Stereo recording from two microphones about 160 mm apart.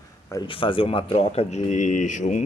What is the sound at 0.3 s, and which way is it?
Speech, 30° left (ahead or behind).